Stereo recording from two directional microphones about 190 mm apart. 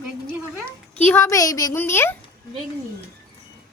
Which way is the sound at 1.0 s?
10° left (ahead or behind).